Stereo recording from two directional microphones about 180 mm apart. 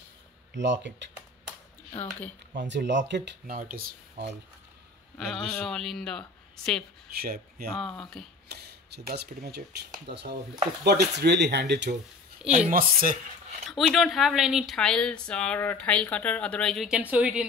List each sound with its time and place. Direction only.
0.6 s speech: 80° right
2.0 s speech: 10° left (ahead or behind)
2.7 s speech: 80° right
3.5 s speech: 50° right (ahead or behind)
4.2 s speech: 70° right (ahead or behind)
5.1 s speech: centre (ahead or behind)
7.2 s speech: 55° right (ahead or behind)
7.7 s speech: 5° left (ahead or behind)
8.5 s speech: 65° right (ahead or behind)
12.4 s speech: 45° right (ahead or behind)
13.7 s speech: centre (ahead or behind)